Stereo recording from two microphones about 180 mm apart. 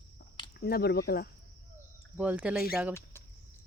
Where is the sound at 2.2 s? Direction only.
5° right (ahead or behind).